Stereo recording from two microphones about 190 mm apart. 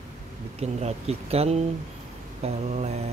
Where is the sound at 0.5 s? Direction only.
35° right (ahead or behind).